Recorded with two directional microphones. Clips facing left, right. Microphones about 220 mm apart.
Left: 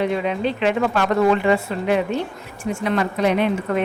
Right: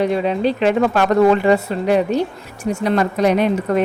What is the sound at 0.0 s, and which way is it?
A woman's voice, 35° right (ahead or behind).